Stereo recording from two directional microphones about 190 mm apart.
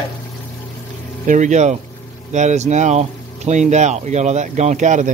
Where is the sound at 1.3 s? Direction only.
40° right (ahead or behind).